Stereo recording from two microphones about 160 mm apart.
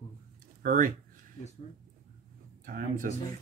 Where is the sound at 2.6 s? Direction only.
60° right (ahead or behind).